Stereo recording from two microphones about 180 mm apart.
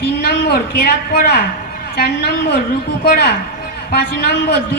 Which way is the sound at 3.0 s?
65° left (ahead or behind).